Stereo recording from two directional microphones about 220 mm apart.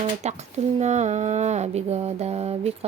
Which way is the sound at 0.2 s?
30° right (ahead or behind).